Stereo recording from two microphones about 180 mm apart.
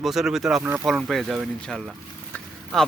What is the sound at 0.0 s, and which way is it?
Speech, centre (ahead or behind).